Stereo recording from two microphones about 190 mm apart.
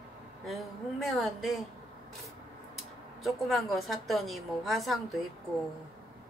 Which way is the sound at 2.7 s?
Centre (ahead or behind).